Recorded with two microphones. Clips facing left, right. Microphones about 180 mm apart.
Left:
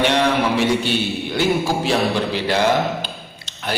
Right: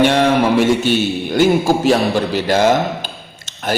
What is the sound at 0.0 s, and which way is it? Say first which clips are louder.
A man's voice: right 5 dB; 45° right (ahead or behind).